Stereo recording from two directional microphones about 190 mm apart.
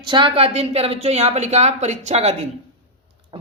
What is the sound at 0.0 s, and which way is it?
Speech, 25° right (ahead or behind).